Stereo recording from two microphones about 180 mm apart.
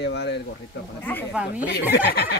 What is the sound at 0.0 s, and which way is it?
Speech, 70° left (ahead or behind).